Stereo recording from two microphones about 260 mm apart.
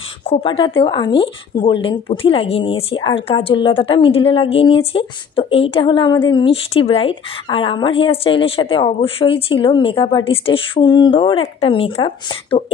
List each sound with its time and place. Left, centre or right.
0.3 s speech: centre